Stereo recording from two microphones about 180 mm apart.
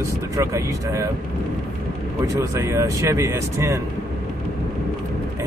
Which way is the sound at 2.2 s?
15° right (ahead or behind).